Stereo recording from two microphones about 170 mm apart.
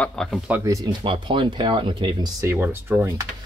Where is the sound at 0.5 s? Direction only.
20° right (ahead or behind).